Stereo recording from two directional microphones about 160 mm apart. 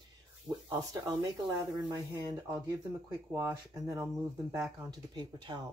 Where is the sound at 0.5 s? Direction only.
20° right (ahead or behind).